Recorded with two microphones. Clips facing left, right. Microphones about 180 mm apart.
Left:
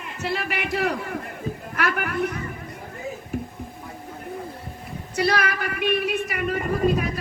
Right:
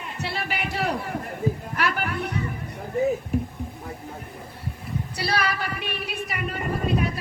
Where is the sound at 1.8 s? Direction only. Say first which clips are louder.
Left 2 dB; 65° left (ahead or behind).